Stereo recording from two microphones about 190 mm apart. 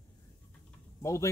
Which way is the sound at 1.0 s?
15° left (ahead or behind).